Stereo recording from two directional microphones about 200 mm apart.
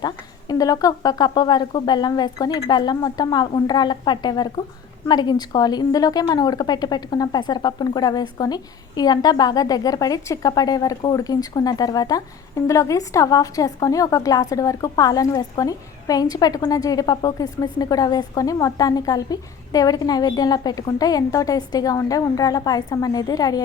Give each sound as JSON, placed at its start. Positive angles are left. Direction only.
{"t": 0.0, "sound": "a woman's voice", "side_deg": 20}